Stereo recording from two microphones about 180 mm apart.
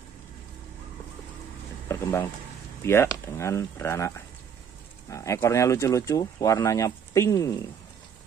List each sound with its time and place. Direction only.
1.9 s a sound: 15° left (ahead or behind)
2.8 s speech: 15° left (ahead or behind)
5.1 s speech: 15° left (ahead or behind)